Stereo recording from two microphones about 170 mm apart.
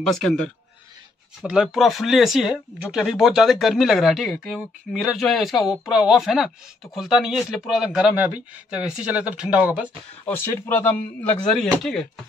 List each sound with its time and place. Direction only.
0.0 s speech: 5° left (ahead or behind)
10.2 s speech: 15° left (ahead or behind)